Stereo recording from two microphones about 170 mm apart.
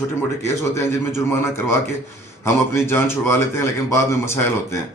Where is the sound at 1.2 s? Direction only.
15° left (ahead or behind).